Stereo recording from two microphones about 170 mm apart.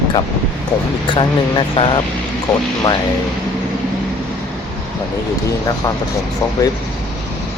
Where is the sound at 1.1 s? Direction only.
30° left (ahead or behind).